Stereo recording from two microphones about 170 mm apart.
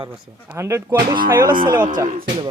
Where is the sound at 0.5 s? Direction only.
15° right (ahead or behind).